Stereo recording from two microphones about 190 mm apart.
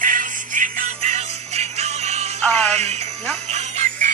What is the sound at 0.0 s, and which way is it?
Jingle bell, 45° right (ahead or behind).